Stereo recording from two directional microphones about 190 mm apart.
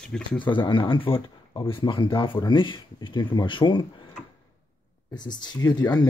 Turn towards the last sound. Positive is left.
turn(degrees=20)  # may be behind; listen again after turning